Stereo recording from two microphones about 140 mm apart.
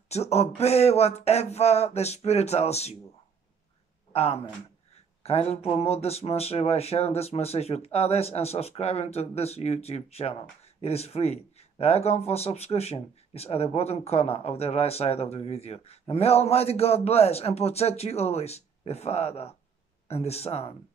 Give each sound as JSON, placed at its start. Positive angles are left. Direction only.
{"t": 0.1, "sound": "speech", "side_deg": 50}
{"t": 4.1, "sound": "speech", "side_deg": 45}